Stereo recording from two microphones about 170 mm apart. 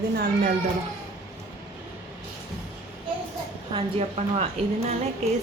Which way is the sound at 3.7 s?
40° right (ahead or behind).